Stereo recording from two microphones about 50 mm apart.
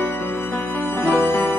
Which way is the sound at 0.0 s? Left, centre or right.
Left.